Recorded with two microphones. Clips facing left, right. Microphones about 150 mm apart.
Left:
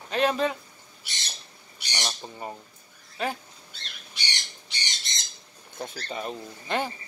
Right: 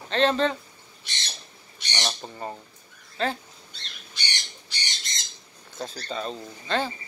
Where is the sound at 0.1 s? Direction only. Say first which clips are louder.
Right 2 dB; 10° left (ahead or behind).